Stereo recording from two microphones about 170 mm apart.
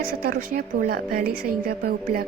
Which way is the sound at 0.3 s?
55° right (ahead or behind).